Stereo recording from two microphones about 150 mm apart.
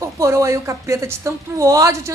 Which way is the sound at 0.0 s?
20° right (ahead or behind).